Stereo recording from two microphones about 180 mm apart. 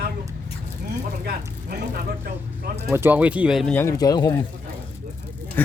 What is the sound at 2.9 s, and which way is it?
Speech, 10° right (ahead or behind).